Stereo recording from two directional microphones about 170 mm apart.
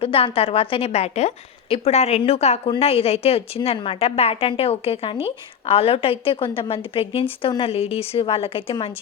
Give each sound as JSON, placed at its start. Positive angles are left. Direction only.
{"t": 0.0, "sound": "a woman's voice", "side_deg": 35}